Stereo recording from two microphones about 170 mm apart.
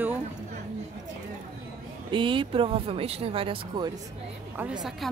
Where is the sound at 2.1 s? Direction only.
30° right (ahead or behind).